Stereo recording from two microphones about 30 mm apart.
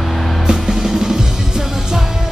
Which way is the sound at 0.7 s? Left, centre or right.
Centre.